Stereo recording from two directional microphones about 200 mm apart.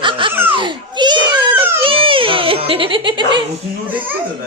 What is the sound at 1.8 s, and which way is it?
A child's voice, 25° right (ahead or behind).